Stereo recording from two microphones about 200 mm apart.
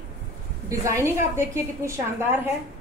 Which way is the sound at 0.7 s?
15° right (ahead or behind).